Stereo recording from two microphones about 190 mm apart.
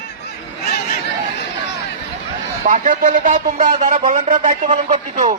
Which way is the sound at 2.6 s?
45° right (ahead or behind).